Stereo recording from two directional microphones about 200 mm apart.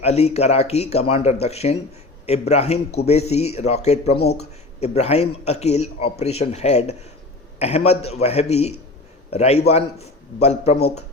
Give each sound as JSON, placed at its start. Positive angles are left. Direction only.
{"t": 0.0, "sound": "speech", "side_deg": 30}